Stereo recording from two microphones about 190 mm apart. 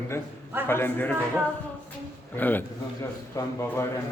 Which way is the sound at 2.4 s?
10° left (ahead or behind).